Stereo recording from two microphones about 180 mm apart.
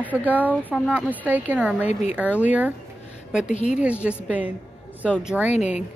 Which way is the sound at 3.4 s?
40° left (ahead or behind).